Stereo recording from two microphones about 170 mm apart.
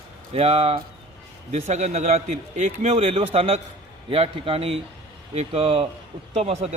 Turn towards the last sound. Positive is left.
turn(degrees=-35)  # may be behind; listen again after turning